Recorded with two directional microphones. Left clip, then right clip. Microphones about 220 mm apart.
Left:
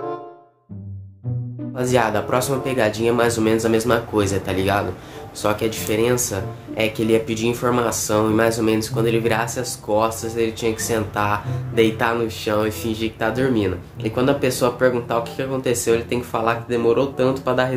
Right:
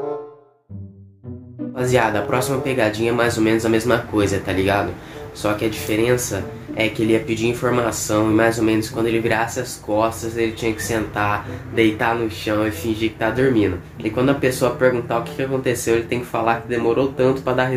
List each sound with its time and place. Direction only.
1.8 s speech: 20° left (ahead or behind)